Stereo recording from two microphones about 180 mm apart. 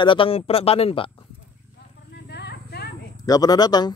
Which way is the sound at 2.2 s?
65° left (ahead or behind).